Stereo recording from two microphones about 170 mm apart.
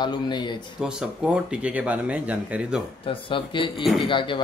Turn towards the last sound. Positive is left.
turn(degrees=30)  # may be behind; listen again after turning